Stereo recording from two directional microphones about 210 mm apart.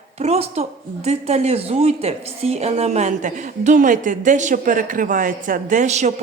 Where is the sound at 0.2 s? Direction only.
30° right (ahead or behind).